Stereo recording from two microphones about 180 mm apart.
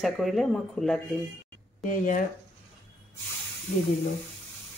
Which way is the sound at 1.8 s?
45° left (ahead or behind).